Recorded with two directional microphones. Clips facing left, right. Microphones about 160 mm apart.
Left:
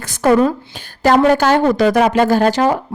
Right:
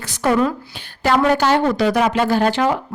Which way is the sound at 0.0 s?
45° left (ahead or behind).